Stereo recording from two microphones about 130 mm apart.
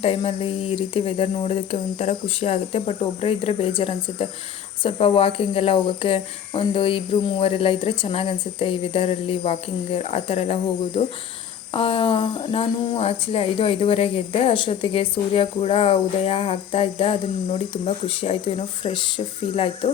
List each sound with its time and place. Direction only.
0.0 s speech: 50° left (ahead or behind)